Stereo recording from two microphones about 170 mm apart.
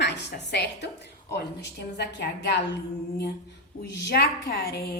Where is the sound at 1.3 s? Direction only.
75° left (ahead or behind).